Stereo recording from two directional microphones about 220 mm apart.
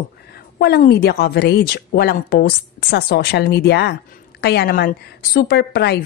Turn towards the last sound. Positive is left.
turn(degrees=50)  # may be behind; listen again after turning